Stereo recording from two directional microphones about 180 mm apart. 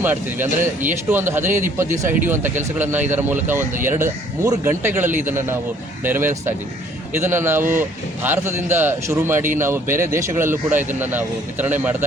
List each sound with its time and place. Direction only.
0.0 s a man's voice: 10° right (ahead or behind)
1.5 s speech: 45° right (ahead or behind)
2.0 s a man's voice: 15° right (ahead or behind)